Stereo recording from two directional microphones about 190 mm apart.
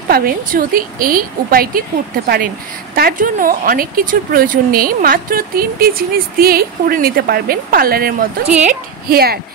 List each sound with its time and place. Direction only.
0.1 s a woman's voice: 50° right (ahead or behind)